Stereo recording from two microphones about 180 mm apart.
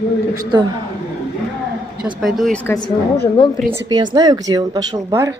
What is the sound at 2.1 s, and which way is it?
Speech, centre (ahead or behind).